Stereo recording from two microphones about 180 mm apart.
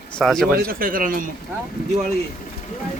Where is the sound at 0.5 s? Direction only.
50° right (ahead or behind).